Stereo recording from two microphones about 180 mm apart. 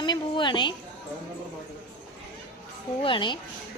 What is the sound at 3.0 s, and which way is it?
Speech, 25° left (ahead or behind).